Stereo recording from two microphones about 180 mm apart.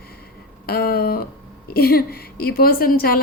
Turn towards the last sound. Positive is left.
turn(degrees=55)  # may be behind; listen again after turning